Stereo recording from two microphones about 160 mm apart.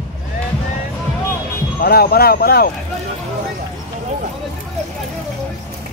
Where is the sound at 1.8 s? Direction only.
70° left (ahead or behind).